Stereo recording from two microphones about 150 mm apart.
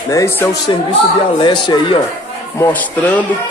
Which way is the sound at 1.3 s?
30° left (ahead or behind).